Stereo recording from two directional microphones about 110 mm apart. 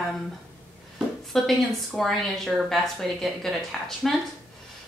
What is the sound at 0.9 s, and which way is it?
A woman's voice, centre (ahead or behind).